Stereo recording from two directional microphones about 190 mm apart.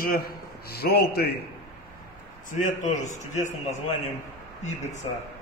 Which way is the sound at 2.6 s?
40° left (ahead or behind).